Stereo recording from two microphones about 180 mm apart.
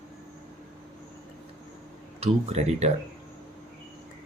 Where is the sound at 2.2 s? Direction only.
35° right (ahead or behind).